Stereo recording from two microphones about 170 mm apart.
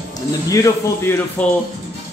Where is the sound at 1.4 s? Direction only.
10° left (ahead or behind).